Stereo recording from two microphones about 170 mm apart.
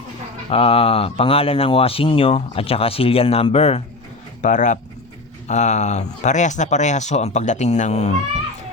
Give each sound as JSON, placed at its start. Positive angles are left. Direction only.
{"t": 0.5, "sound": "speech", "side_deg": 35}